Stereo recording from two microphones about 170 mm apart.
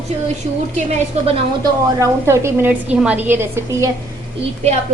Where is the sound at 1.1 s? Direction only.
40° right (ahead or behind).